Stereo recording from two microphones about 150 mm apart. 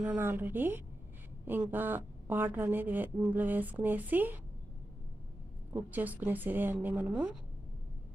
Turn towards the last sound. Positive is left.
turn(degrees=-5)  # may be behind; listen again after turning